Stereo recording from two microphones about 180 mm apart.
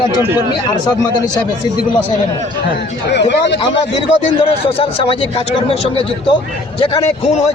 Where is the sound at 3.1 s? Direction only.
70° left (ahead or behind).